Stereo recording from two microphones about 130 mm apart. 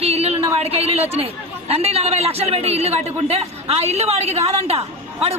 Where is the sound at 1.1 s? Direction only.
50° right (ahead or behind).